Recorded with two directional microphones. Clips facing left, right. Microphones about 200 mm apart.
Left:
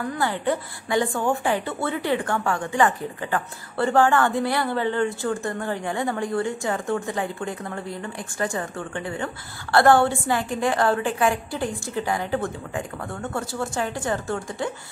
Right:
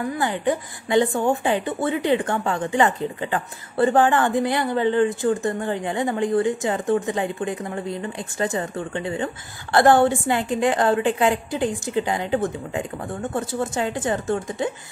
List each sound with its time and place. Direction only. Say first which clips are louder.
0.1 s a woman's voice: even; 15° right (ahead or behind)